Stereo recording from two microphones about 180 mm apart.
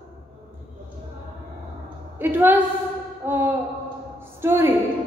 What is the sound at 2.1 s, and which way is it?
Speech, 10° right (ahead or behind).